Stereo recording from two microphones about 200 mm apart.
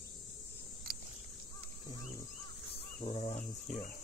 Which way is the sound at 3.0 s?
35° left (ahead or behind).